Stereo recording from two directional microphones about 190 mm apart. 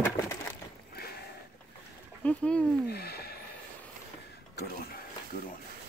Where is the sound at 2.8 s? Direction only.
55° left (ahead or behind).